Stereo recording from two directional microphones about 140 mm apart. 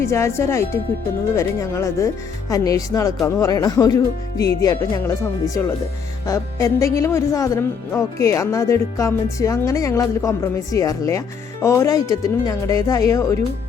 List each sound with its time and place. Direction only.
0.0 s speech: 20° left (ahead or behind)
6.2 s speech: 25° left (ahead or behind)